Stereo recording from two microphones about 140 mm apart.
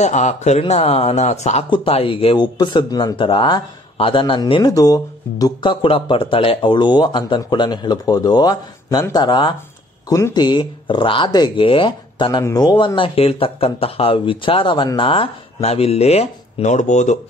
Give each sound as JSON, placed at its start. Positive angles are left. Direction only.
{"t": 0.0, "sound": "speech", "side_deg": 55}